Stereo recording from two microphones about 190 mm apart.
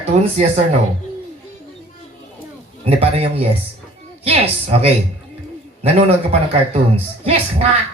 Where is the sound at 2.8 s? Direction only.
30° right (ahead or behind).